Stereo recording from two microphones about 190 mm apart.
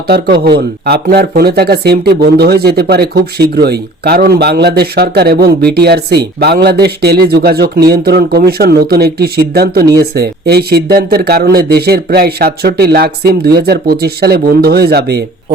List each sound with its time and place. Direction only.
0.1 s speech: 55° right (ahead or behind)